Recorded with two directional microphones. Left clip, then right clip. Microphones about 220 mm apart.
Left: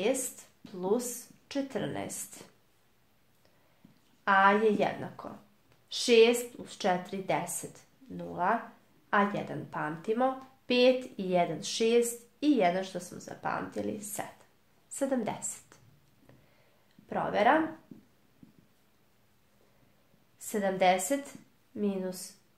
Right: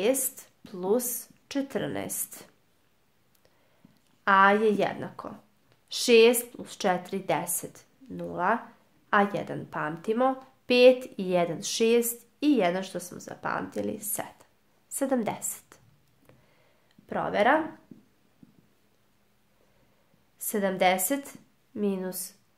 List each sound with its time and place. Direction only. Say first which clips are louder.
0.0 s a woman's voice: right 4 dB; 40° right (ahead or behind)
4.2 s a woman's voice: right 3 dB; 35° right (ahead or behind)
17.1 s a woman's voice: right 2 dB; 40° right (ahead or behind)
20.3 s a woman's voice: right 2 dB; 40° right (ahead or behind)